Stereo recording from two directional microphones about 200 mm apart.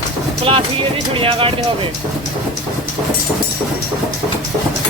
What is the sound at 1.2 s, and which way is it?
Speech, 25° right (ahead or behind).